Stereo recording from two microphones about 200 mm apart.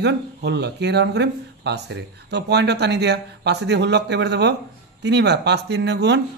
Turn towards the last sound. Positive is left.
turn(degrees=-55)  # may be behind; listen again after turning